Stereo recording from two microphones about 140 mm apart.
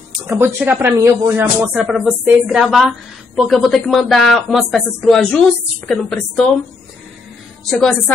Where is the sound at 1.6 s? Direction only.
5° right (ahead or behind).